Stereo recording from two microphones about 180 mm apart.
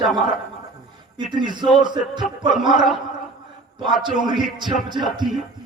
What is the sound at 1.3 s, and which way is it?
Speech, 25° right (ahead or behind).